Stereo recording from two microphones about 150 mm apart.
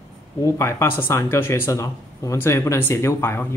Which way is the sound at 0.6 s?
15° left (ahead or behind).